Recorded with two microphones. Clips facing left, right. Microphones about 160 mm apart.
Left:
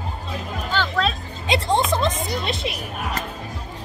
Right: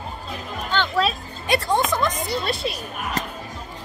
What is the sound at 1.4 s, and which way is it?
Music, 20° left (ahead or behind).